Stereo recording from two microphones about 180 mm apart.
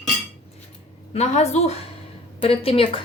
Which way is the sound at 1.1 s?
40° left (ahead or behind).